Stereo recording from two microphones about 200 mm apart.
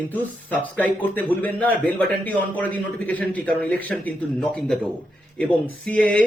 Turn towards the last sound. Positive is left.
turn(degrees=5)  # may be behind; listen again after turning